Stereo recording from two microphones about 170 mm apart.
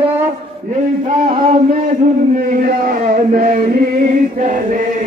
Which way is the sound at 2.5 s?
55° right (ahead or behind).